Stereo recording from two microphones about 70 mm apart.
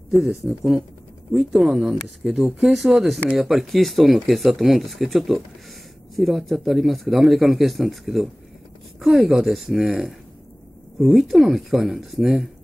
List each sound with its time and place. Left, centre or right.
0.1 s speech: centre